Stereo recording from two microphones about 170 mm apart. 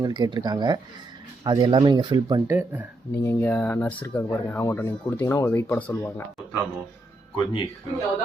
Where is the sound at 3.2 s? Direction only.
15° left (ahead or behind).